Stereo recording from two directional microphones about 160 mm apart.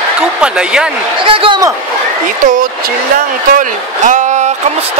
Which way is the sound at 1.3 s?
35° right (ahead or behind).